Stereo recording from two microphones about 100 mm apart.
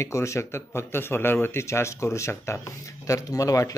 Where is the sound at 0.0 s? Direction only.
30° left (ahead or behind).